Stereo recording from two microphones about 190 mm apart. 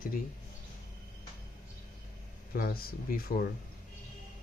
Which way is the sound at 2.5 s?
50° left (ahead or behind).